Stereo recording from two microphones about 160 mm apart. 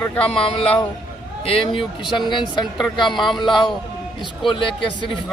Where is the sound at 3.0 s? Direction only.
Centre (ahead or behind).